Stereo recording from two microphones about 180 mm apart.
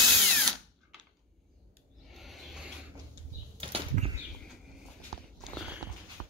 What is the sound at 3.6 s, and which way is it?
Bird flight, 30° right (ahead or behind).